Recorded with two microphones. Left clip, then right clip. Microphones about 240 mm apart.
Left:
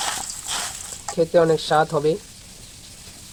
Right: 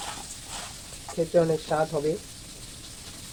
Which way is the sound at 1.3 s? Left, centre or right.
Left.